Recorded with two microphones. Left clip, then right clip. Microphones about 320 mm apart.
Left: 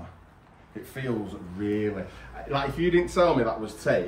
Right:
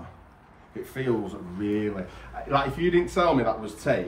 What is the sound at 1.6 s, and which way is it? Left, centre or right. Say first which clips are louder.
Speech: even; centre.